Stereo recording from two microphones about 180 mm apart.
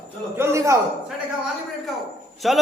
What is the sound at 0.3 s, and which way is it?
Speech, 15° right (ahead or behind).